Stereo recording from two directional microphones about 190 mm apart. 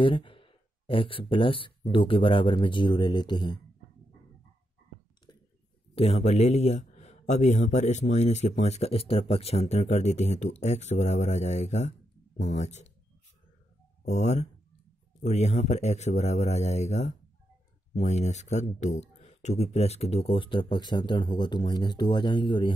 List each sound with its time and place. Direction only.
0.0 s speech: 25° left (ahead or behind)
5.9 s speech: 35° left (ahead or behind)
14.0 s speech: 35° left (ahead or behind)